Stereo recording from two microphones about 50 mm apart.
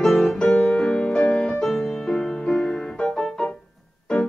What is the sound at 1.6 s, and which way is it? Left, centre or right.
Music, centre.